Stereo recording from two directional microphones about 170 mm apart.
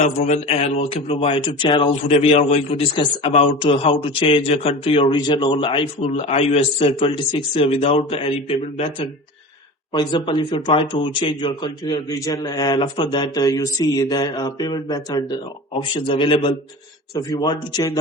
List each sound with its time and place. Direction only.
0.0 s speech: 40° left (ahead or behind)